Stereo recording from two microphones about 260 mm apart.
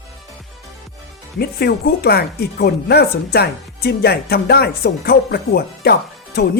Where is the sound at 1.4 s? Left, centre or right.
Left.